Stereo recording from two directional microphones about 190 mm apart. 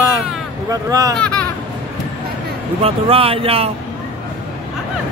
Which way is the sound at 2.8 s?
30° right (ahead or behind).